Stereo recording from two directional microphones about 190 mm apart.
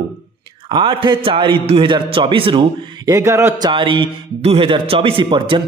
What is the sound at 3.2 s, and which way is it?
Speech, 15° right (ahead or behind).